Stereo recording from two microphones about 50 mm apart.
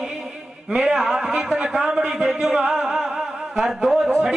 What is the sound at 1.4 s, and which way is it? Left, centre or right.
A man's voice, centre.